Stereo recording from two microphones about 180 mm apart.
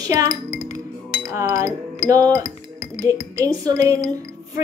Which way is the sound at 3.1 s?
20° right (ahead or behind).